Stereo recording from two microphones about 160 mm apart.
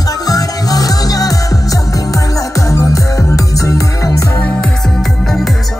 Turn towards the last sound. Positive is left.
turn(degrees=0)  # may be behind; listen again after turning